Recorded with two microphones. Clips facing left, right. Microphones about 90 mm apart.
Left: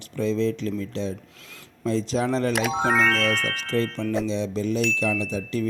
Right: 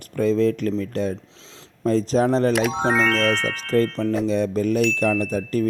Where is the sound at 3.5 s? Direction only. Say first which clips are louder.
Right 5 dB; 40° right (ahead or behind).